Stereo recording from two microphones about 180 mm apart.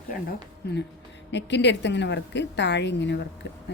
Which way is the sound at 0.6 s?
65° left (ahead or behind).